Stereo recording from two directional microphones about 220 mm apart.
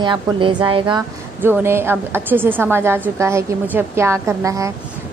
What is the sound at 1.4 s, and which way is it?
A woman's voice, 10° right (ahead or behind).